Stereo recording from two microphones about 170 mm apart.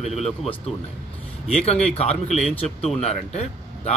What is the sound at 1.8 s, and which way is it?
Speech, 35° left (ahead or behind).